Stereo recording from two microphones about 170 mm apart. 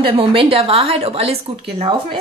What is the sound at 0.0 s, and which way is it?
A woman's voice, 30° right (ahead or behind).